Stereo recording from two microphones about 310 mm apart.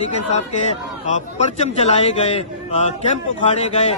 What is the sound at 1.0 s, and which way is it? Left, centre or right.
A man's voice, left.